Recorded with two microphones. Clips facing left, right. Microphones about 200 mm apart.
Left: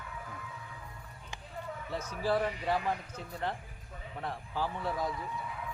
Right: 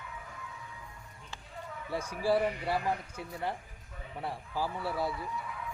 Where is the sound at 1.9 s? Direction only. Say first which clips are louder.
Right 3 dB; 10° right (ahead or behind).